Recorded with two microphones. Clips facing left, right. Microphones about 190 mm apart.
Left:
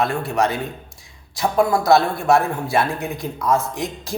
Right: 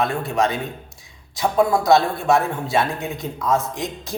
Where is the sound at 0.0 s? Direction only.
20° right (ahead or behind).